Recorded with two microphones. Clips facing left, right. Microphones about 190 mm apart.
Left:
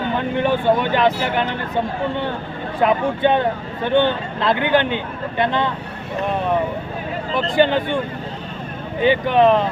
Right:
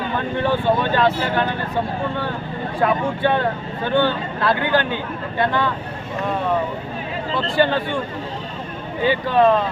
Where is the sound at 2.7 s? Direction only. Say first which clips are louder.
Left 2 dB; 20° left (ahead or behind).